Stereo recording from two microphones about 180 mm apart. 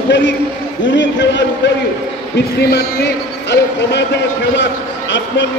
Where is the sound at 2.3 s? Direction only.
65° left (ahead or behind).